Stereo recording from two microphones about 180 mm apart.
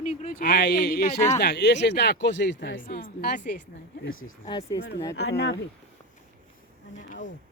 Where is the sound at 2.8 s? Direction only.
55° left (ahead or behind).